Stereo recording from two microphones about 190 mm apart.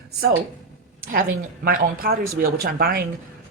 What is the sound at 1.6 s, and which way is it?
Speech, 50° right (ahead or behind).